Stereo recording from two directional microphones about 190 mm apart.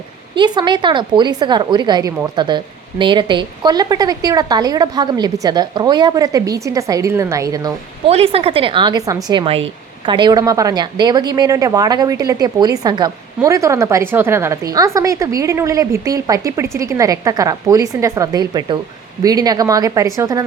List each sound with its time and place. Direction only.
0.3 s a woman's voice: 25° right (ahead or behind)
8.0 s a woman's voice: 30° right (ahead or behind)